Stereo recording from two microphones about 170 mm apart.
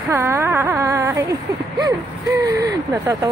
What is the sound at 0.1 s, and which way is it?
Speech, 15° right (ahead or behind).